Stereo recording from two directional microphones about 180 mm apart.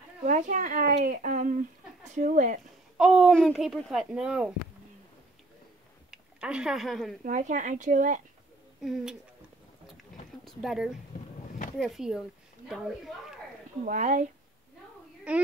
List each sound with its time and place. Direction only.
0.2 s speech: 45° right (ahead or behind)
3.0 s speech: 5° right (ahead or behind)
6.0 s speech: 5° right (ahead or behind)
7.2 s speech: 45° right (ahead or behind)
10.4 s speech: centre (ahead or behind)
13.8 s speech: 45° right (ahead or behind)
15.3 s a child's voice: 5° right (ahead or behind)